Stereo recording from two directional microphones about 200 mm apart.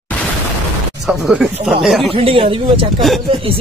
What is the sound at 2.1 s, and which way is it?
Speech, 30° right (ahead or behind).